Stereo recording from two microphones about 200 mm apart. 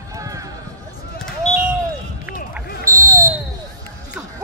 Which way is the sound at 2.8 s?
15° right (ahead or behind).